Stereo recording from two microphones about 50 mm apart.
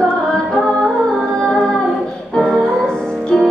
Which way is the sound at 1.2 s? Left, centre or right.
Centre.